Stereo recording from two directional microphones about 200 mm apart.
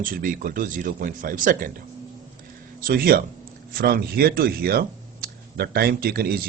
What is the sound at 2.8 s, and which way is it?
Speech, 45° right (ahead or behind).